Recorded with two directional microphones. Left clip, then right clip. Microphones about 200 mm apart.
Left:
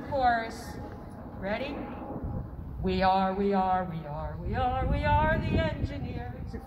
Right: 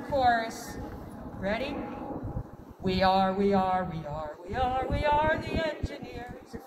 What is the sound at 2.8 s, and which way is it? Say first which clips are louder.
Speech: right 1 dB; 20° right (ahead or behind).